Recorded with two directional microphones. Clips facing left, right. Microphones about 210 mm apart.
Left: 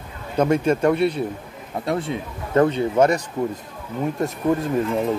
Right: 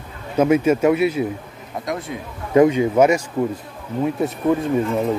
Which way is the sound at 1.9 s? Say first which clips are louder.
Left 3 dB; 30° left (ahead or behind).